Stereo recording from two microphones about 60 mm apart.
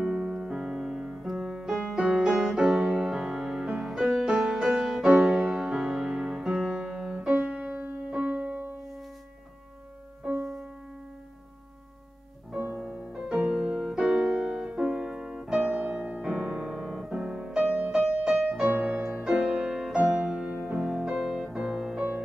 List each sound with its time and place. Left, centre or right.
0.0 s music: centre
12.8 s music: centre
18.8 s music: right
19.2 s music: centre